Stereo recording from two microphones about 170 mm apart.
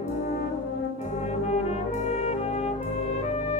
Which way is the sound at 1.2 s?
40° left (ahead or behind).